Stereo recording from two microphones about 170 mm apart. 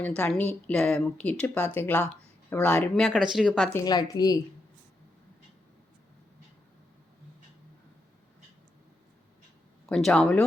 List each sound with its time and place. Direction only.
0.0 s a woman's voice: 10° left (ahead or behind)
3.7 s a woman's voice: 20° left (ahead or behind)
9.8 s speech: 5° left (ahead or behind)